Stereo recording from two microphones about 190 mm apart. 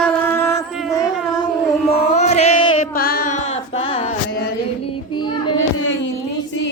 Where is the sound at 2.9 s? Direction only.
50° left (ahead or behind); by 4.0 s 35° left (ahead or behind).